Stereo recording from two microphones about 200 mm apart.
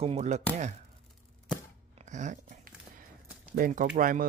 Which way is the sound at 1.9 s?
35° right (ahead or behind).